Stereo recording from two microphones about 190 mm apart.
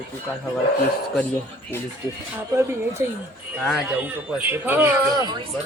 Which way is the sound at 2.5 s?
15° right (ahead or behind).